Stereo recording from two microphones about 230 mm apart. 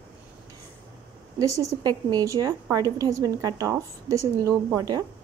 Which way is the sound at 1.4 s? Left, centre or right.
Centre.